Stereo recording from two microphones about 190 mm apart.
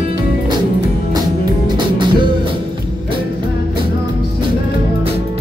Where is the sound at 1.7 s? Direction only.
25° right (ahead or behind).